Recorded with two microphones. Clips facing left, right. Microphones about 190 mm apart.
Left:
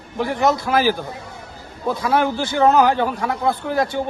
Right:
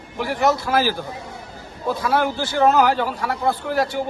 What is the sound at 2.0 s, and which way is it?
A man's voice, 15° left (ahead or behind).